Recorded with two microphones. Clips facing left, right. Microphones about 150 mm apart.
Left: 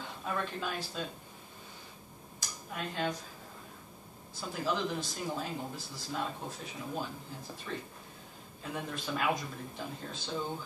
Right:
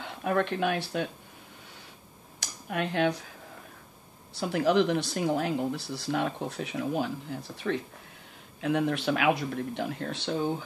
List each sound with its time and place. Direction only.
0.0 s speech: 65° right (ahead or behind)
2.4 s speech: 70° right (ahead or behind)
4.3 s speech: 75° right (ahead or behind)